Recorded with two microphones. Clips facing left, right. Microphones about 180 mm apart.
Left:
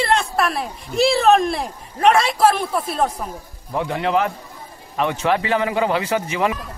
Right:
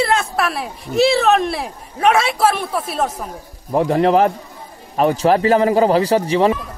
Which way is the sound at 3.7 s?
40° right (ahead or behind).